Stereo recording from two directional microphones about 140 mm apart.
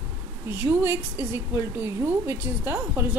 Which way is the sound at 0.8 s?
15° right (ahead or behind).